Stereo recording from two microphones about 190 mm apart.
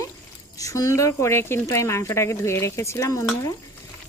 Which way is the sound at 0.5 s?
15° left (ahead or behind).